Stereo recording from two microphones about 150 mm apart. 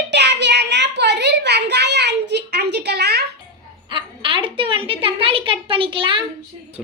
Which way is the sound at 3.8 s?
35° right (ahead or behind).